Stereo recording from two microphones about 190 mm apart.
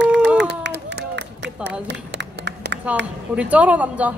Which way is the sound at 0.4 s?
65° right (ahead or behind).